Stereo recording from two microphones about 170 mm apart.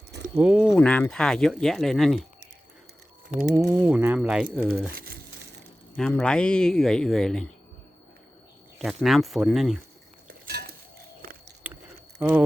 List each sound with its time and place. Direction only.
0.3 s speech: 5° right (ahead or behind)
0.7 s speech: 10° left (ahead or behind)
3.5 s speech: 20° right (ahead or behind)
3.8 s speech: 10° right (ahead or behind)
4.9 s speech: 60° right (ahead or behind)
6.0 s speech: 5° left (ahead or behind)
8.8 s speech: centre (ahead or behind)
10.4 s dishes: 70° right (ahead or behind)
11.6 s a sound: 10° right (ahead or behind)
12.2 s speech: 10° right (ahead or behind)